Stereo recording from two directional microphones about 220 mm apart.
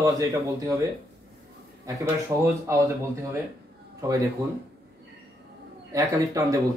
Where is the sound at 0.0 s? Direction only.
15° right (ahead or behind).